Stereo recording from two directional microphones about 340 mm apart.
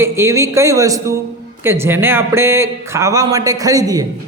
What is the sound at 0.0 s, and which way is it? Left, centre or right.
Speech, centre.